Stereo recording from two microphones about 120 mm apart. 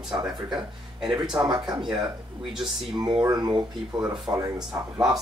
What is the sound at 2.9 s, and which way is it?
Speech, 40° right (ahead or behind).